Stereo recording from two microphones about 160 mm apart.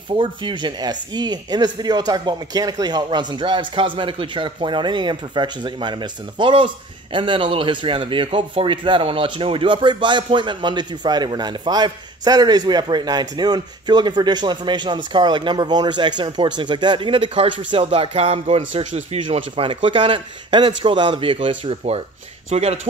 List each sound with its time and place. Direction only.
0.1 s speech: 30° right (ahead or behind)